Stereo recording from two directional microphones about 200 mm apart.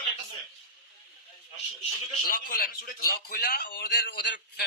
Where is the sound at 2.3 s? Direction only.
45° left (ahead or behind).